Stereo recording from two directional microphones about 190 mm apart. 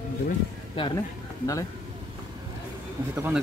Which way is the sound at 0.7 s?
25° left (ahead or behind).